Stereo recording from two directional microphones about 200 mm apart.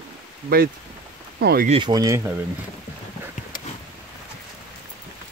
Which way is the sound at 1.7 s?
20° right (ahead or behind).